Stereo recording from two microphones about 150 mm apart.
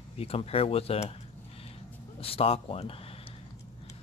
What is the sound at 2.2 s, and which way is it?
Speech, 40° left (ahead or behind).